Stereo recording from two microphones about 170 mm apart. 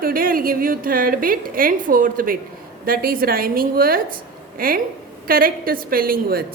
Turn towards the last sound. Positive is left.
turn(degrees=-60)  # may be behind; listen again after turning